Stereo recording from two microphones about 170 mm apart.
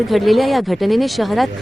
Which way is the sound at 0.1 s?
Centre (ahead or behind).